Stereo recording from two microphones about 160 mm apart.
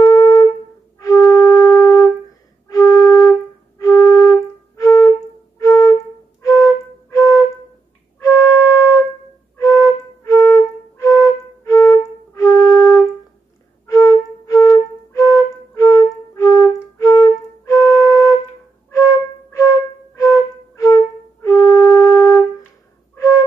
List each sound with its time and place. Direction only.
0.0 s wind instrument: 20° left (ahead or behind)
0.9 s flute: 20° left (ahead or behind)
9.6 s flute: 20° left (ahead or behind)
20.2 s flute: 20° left (ahead or behind)